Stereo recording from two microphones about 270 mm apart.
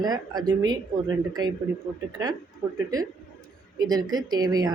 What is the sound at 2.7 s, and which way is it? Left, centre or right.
Speech, centre.